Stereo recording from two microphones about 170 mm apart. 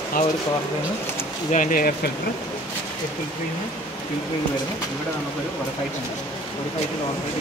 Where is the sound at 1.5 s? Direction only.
50° left (ahead or behind).